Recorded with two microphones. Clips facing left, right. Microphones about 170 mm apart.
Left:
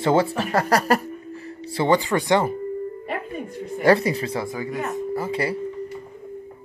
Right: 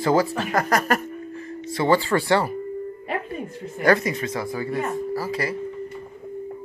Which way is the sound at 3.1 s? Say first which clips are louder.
Right 1 dB; centre (ahead or behind).